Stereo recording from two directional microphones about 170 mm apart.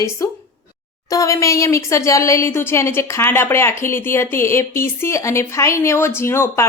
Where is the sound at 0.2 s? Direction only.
20° left (ahead or behind).